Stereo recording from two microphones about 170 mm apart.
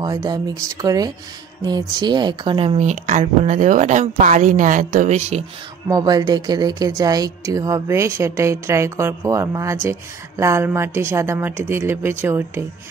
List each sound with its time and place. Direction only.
0.0 s speech: 20° right (ahead or behind); by 5.4 s 40° right (ahead or behind)
5.9 s speech: 25° right (ahead or behind)